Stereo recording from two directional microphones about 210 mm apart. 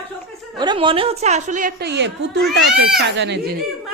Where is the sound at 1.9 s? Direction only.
55° right (ahead or behind).